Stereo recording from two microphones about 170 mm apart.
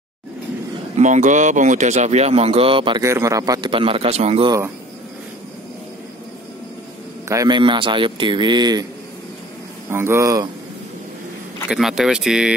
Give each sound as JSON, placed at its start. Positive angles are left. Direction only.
{"t": 0.9, "sound": "speech", "side_deg": -45}
{"t": 3.0, "sound": "speech", "side_deg": -15}
{"t": 7.2, "sound": "speech", "side_deg": -20}
{"t": 9.8, "sound": "speech", "side_deg": -15}
{"t": 11.7, "sound": "speech", "side_deg": 0}